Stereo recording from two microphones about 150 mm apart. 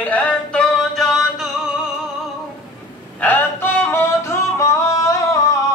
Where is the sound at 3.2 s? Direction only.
10° left (ahead or behind).